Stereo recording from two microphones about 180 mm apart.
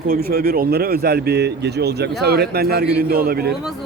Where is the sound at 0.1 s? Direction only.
55° right (ahead or behind).